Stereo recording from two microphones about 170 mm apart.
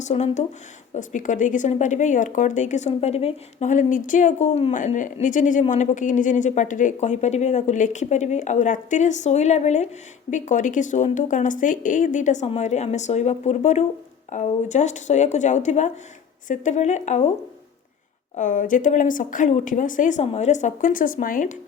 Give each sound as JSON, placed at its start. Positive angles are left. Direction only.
{"t": 0.0, "sound": "speech", "side_deg": 40}
{"t": 18.3, "sound": "speech", "side_deg": 50}